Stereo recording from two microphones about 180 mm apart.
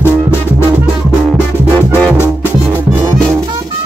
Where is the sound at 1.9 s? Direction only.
10° left (ahead or behind).